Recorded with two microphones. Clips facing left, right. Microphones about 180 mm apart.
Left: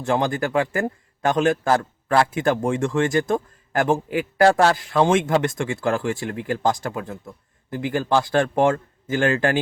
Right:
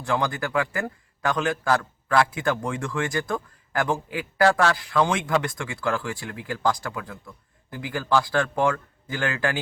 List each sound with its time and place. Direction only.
0.0 s a man's voice: 25° left (ahead or behind)